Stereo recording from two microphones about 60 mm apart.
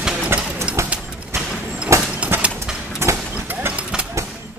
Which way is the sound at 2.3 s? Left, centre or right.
Right.